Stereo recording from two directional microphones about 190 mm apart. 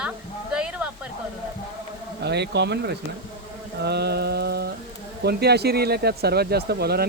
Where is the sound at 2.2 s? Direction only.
60° right (ahead or behind).